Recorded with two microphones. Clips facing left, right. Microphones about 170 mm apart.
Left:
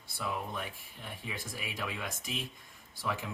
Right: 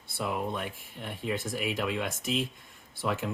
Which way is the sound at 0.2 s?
65° right (ahead or behind).